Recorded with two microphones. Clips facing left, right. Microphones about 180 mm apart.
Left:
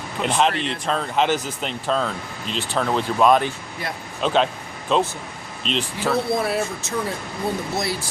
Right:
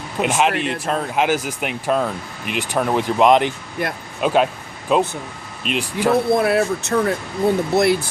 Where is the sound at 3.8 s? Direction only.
55° right (ahead or behind).